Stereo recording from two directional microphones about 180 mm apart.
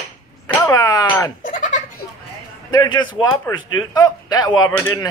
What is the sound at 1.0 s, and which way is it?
Goat, 10° left (ahead or behind).